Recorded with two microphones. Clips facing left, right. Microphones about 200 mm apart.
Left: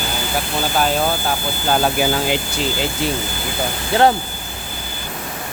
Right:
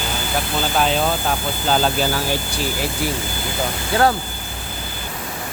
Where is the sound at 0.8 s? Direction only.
5° left (ahead or behind); by 3.1 s 25° left (ahead or behind).